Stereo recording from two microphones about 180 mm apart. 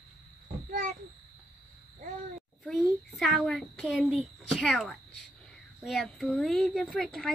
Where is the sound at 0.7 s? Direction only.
55° right (ahead or behind).